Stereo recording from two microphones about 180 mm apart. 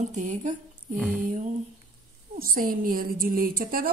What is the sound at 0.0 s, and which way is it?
Speech, 40° right (ahead or behind).